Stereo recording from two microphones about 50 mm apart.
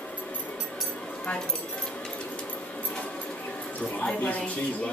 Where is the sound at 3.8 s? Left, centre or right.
Left.